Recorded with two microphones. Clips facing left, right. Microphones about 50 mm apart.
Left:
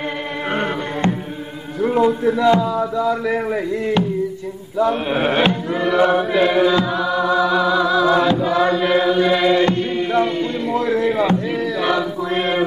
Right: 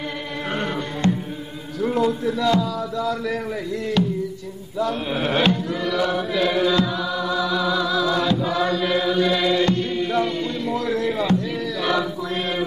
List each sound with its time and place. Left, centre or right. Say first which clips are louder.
0.5 s music: left 4 dB; left
1.8 s a man's voice: left 5 dB; centre
4.7 s chant: left 6 dB; left
12.3 s speech: left 6 dB; left